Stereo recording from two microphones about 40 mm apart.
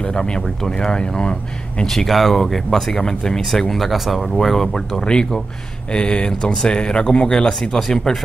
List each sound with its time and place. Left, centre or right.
0.1 s speech: centre
2.0 s speech: centre
2.7 s speech: centre
3.7 s speech: centre
4.4 s speech: centre